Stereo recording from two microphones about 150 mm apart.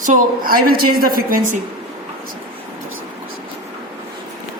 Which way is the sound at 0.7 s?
80° right.